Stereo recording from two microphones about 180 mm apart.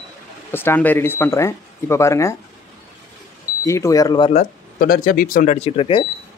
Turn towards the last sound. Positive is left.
turn(degrees=30)  # may be behind; listen again after turning